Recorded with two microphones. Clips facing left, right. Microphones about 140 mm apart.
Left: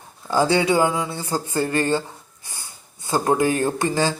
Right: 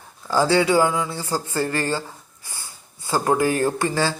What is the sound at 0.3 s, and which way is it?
Speech, 20° left (ahead or behind).